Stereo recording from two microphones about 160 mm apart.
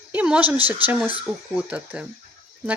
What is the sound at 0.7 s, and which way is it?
Speech, 10° right (ahead or behind).